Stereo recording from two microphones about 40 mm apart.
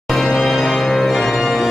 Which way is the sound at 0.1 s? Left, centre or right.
Centre.